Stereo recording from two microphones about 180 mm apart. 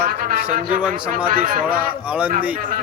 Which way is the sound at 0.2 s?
55° right (ahead or behind).